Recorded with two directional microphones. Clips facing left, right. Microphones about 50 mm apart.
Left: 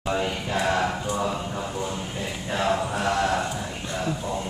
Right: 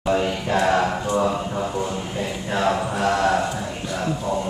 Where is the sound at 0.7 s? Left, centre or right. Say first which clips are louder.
Right 4 dB; right.